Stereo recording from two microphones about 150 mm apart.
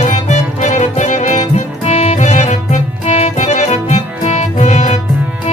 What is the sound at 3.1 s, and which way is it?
Accordion, 50° left (ahead or behind).